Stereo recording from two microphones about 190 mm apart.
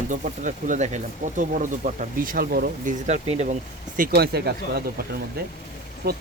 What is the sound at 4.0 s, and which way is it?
Speech, 55° right (ahead or behind).